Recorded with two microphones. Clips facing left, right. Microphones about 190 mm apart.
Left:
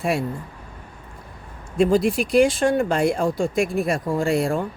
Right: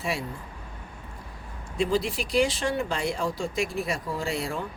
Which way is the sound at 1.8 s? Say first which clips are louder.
Left 8 dB; 50° left (ahead or behind).